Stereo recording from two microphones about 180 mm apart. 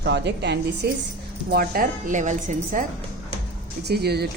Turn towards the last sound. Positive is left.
turn(degrees=-65)  # may be behind; listen again after turning